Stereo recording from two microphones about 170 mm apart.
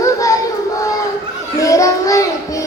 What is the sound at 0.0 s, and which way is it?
Child singing, 20° left (ahead or behind).